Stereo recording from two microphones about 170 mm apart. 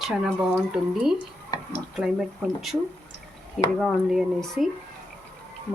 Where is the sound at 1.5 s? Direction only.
20° left (ahead or behind).